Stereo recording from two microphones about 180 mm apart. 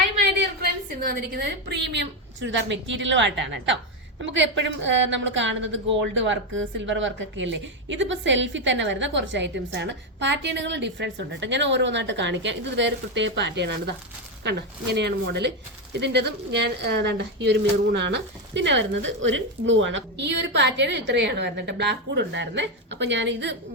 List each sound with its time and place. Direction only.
1.0 s a woman's voice: 55° right (ahead or behind); by 13.9 s 75° right (ahead or behind)
14.9 s speech: 70° right (ahead or behind)